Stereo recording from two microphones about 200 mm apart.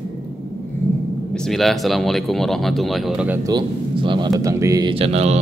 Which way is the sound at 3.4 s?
25° right (ahead or behind).